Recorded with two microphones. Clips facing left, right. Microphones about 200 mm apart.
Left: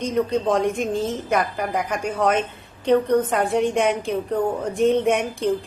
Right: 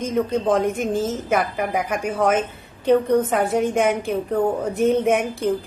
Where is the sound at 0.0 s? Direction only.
5° right (ahead or behind).